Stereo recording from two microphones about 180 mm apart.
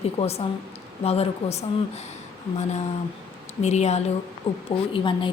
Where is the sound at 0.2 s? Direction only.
35° left (ahead or behind).